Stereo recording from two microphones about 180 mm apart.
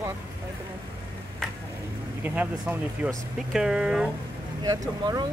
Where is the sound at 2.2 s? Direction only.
10° right (ahead or behind).